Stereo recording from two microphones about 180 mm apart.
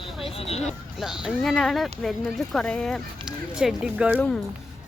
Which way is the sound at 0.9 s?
5° right (ahead or behind).